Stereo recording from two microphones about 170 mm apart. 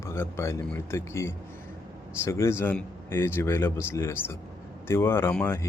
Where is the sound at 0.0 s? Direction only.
15° left (ahead or behind).